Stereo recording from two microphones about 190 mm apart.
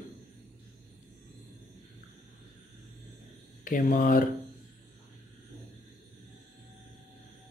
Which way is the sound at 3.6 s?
45° left (ahead or behind).